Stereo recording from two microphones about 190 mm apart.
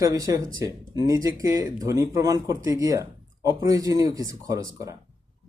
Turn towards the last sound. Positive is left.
turn(degrees=-15)  # may be behind; listen again after turning